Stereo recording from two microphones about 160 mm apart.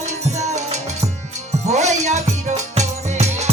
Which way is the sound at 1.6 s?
45° right (ahead or behind).